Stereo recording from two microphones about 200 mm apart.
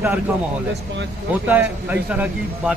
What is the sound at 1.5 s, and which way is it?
Speech, 10° right (ahead or behind).